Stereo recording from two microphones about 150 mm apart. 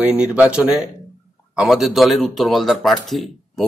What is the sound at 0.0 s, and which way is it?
Speech, 5° right (ahead or behind).